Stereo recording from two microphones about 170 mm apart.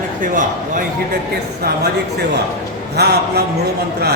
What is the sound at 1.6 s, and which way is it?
Speech, 60° right (ahead or behind).